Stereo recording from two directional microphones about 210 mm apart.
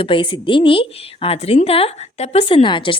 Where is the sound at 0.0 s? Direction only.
25° left (ahead or behind).